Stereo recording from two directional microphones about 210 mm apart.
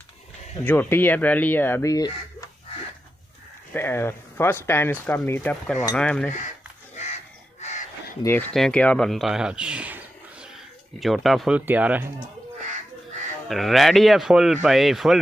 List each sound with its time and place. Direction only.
0.7 s speech: 10° left (ahead or behind)
3.7 s a man's voice: 10° left (ahead or behind)
7.6 s crow: 35° left (ahead or behind)
8.2 s a man's voice: 10° left (ahead or behind); by 12.1 s 5° right (ahead or behind)
13.5 s a man's voice: centre (ahead or behind)